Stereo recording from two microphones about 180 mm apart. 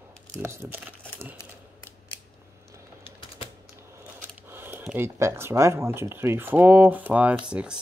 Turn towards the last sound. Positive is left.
turn(degrees=-5)  # may be behind; listen again after turning